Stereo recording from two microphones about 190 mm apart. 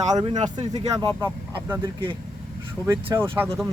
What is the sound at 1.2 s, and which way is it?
Speech, 10° right (ahead or behind).